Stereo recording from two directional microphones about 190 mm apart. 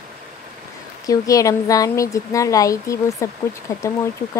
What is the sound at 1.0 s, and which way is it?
A woman's voice, 20° left (ahead or behind).